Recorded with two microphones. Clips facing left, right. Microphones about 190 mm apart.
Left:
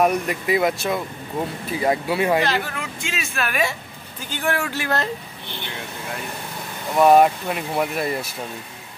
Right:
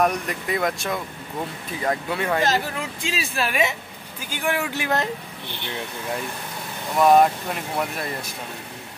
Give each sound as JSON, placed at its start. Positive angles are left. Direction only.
{"t": 0.0, "sound": "speech", "side_deg": 5}
{"t": 2.4, "sound": "speech", "side_deg": -40}
{"t": 4.3, "sound": "speech", "side_deg": -15}
{"t": 7.0, "sound": "speech", "side_deg": 5}